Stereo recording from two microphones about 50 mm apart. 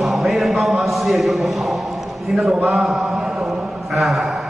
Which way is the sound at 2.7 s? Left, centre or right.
Centre.